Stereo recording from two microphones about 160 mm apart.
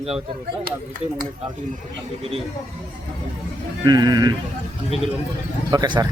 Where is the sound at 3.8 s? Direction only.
25° right (ahead or behind).